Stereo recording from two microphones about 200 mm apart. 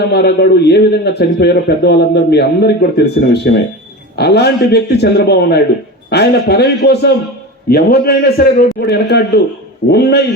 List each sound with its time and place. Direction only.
0.0 s a man's voice: 55° left (ahead or behind)